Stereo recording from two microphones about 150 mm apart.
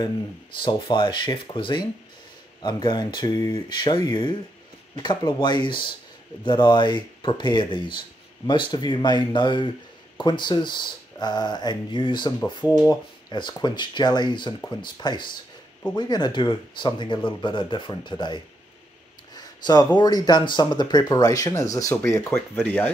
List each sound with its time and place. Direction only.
0.6 s speech: 35° left (ahead or behind); by 22.9 s 10° left (ahead or behind)